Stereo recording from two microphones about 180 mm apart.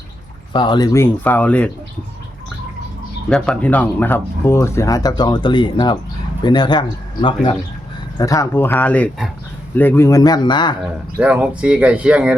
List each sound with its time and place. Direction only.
0.5 s speech: 25° left (ahead or behind); by 1.7 s 5° left (ahead or behind)
3.2 s speech: 5° left (ahead or behind); by 10.8 s 25° left (ahead or behind)
11.2 s speech: 5° right (ahead or behind)